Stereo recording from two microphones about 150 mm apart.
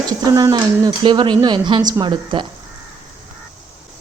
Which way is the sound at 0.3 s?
25° right (ahead or behind).